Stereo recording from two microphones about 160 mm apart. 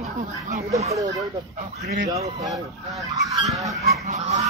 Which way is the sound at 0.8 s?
20° right (ahead or behind).